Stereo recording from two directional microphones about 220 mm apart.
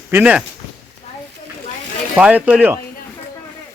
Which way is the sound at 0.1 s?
5° right (ahead or behind).